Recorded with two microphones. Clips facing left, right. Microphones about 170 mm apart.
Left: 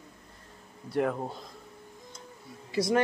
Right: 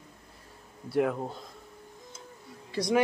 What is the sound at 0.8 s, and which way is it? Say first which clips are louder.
Speech: right 1 dB; 5° right (ahead or behind).